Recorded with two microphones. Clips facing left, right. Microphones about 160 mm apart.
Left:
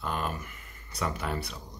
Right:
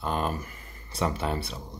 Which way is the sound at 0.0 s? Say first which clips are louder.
Right 4 dB; 30° right (ahead or behind).